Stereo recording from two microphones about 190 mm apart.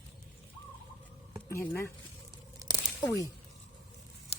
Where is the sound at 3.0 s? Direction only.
10° left (ahead or behind).